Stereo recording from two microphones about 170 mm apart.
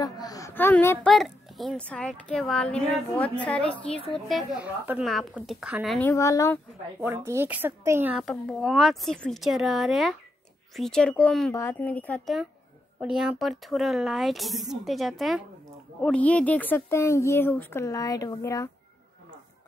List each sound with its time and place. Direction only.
0.0 s a child's voice: 20° left (ahead or behind); by 5.9 s 5° right (ahead or behind)
5.9 s speech: 15° left (ahead or behind)
7.0 s speech: 15° right (ahead or behind); by 12.4 s 10° left (ahead or behind)
13.0 s speech: 5° right (ahead or behind); by 18.7 s 20° left (ahead or behind)